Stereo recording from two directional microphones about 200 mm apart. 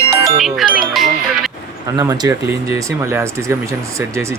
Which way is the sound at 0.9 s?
Centre (ahead or behind).